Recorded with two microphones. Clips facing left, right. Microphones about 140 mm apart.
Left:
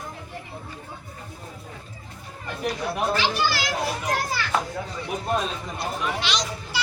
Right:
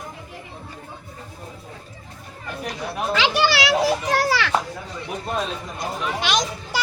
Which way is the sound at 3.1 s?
85° right.